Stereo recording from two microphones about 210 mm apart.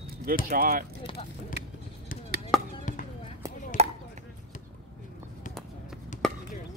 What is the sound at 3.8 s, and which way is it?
Chop, 30° right (ahead or behind).